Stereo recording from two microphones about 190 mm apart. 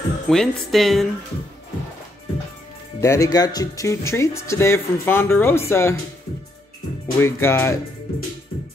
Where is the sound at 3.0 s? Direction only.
15° left (ahead or behind).